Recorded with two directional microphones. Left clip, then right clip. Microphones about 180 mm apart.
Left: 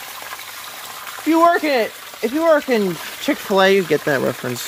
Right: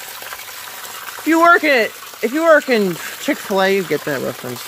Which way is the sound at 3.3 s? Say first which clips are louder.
Left 1 dB; centre (ahead or behind).